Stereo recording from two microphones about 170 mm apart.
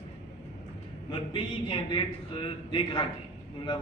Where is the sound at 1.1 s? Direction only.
30° left (ahead or behind).